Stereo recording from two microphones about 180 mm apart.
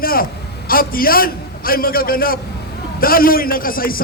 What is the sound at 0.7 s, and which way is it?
A man's voice, 55° left (ahead or behind).